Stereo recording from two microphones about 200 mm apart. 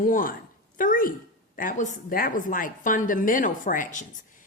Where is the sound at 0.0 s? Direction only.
45° left (ahead or behind).